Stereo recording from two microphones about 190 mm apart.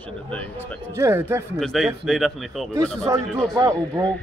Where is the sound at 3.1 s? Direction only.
15° right (ahead or behind).